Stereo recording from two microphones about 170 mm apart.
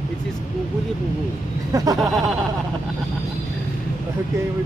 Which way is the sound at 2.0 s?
Centre (ahead or behind).